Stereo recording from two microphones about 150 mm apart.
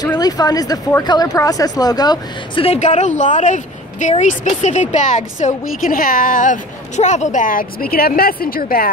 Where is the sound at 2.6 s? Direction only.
45° left (ahead or behind).